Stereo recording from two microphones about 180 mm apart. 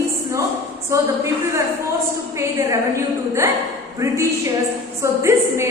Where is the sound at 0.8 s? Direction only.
15° right (ahead or behind).